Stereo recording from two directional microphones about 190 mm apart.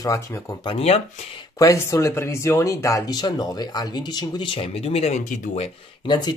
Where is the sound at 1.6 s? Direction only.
15° left (ahead or behind); by 5.7 s 35° left (ahead or behind).